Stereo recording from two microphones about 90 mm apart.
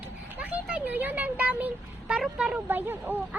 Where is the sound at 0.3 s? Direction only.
15° right (ahead or behind).